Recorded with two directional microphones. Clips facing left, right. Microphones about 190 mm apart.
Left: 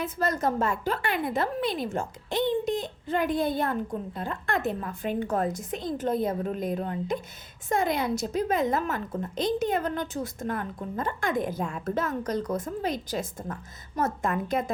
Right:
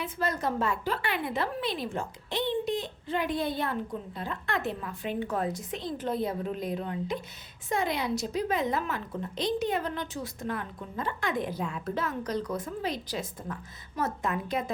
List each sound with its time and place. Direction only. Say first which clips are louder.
0.0 s a woman's voice: left 3 dB; 45° left (ahead or behind)